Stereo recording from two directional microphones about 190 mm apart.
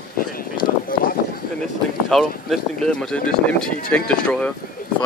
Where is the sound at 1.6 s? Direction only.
Centre (ahead or behind).